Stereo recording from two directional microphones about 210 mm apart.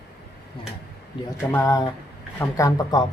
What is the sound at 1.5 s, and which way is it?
Speech, 15° left (ahead or behind).